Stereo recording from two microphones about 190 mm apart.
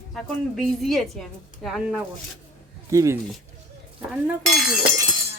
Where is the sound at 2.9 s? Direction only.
15° right (ahead or behind).